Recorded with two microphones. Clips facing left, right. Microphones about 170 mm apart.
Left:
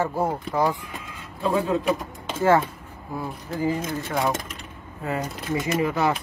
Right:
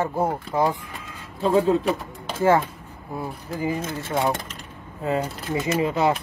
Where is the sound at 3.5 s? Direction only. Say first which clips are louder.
Left 2 dB; 15° right (ahead or behind).